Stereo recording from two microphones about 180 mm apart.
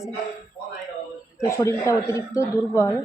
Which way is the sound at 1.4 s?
15° left (ahead or behind).